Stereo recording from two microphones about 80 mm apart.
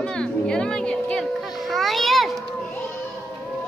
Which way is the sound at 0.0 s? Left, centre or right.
Centre.